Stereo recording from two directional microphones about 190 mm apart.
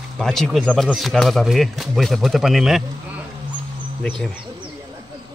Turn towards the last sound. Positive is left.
turn(degrees=0)  # may be behind; listen again after turning